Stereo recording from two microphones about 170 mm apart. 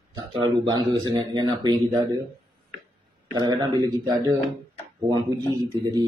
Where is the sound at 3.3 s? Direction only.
25° right (ahead or behind).